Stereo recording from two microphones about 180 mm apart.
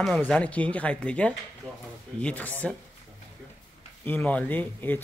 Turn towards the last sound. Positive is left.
turn(degrees=10)  # may be behind; listen again after turning